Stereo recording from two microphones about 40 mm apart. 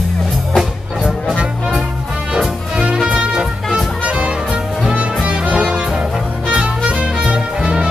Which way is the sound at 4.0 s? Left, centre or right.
Right.